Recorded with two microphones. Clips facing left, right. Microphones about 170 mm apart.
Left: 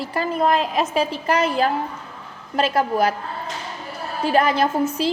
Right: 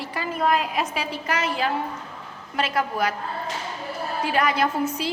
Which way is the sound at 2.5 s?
35° left (ahead or behind).